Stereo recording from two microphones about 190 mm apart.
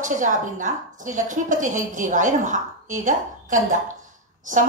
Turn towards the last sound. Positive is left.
turn(degrees=-45)  # may be behind; listen again after turning